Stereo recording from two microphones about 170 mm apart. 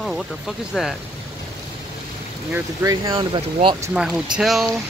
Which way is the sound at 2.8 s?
20° right (ahead or behind).